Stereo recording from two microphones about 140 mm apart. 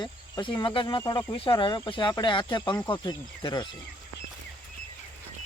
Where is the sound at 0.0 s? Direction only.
35° left (ahead or behind).